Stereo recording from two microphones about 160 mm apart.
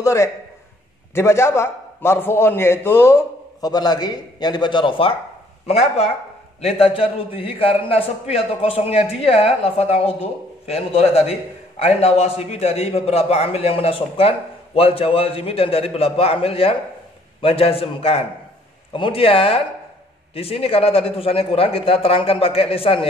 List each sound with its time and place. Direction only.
0.0 s a man's voice: 20° left (ahead or behind)
3.6 s a man's voice: 25° left (ahead or behind)